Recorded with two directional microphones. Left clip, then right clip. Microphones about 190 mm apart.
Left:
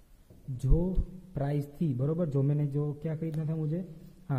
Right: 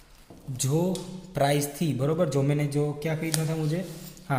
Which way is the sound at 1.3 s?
25° left (ahead or behind).